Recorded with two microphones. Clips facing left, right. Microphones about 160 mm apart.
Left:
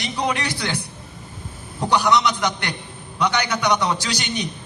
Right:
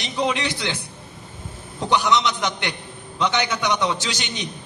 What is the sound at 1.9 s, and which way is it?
A man's voice, 20° right (ahead or behind).